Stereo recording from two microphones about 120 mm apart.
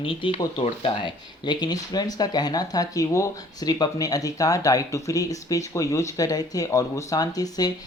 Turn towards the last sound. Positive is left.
turn(degrees=30)  # may be behind; listen again after turning